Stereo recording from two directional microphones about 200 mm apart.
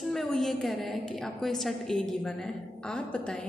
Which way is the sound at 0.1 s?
Centre (ahead or behind).